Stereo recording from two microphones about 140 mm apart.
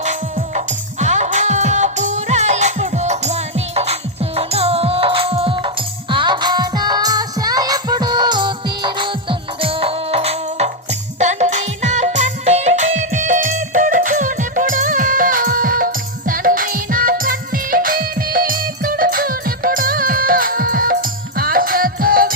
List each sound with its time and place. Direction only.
0.0 s music: 55° right (ahead or behind)
11.2 s music: 55° right (ahead or behind); by 22.3 s 90° right